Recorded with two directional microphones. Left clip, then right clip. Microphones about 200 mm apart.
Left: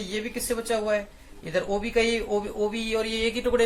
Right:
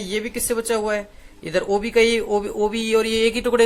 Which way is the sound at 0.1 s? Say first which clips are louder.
Right 6 dB; 50° right (ahead or behind).